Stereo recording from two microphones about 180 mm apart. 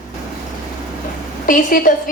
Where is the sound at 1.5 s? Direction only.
50° left (ahead or behind).